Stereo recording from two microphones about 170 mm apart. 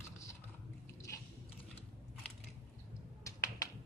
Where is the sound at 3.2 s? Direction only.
20° left (ahead or behind).